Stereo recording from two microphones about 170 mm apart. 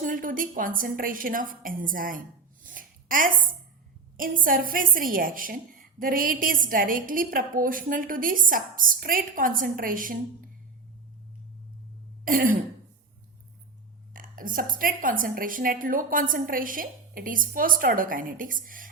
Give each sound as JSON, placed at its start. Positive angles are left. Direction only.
{"t": 0.0, "sound": "a woman's voice", "side_deg": -55}
{"t": 2.6, "sound": "a sound", "side_deg": -55}
{"t": 4.2, "sound": "a woman's voice", "side_deg": -55}
{"t": 12.2, "sound": "throat clearing", "side_deg": -55}
{"t": 14.1, "sound": "a woman's voice", "side_deg": -55}